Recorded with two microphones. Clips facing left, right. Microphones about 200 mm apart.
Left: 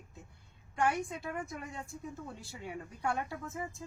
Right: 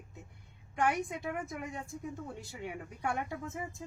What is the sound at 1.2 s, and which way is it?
Speech, 15° right (ahead or behind).